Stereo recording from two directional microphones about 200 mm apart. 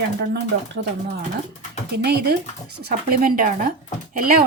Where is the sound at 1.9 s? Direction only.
55° right (ahead or behind).